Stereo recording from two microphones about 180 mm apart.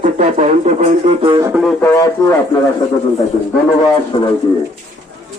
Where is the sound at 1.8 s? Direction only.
15° left (ahead or behind).